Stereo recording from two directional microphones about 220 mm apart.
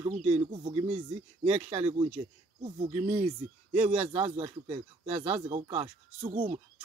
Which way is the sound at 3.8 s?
30° right (ahead or behind).